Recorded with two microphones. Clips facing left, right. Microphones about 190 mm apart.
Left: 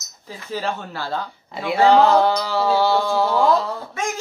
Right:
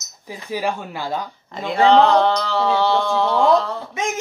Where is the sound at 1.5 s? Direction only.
10° left (ahead or behind).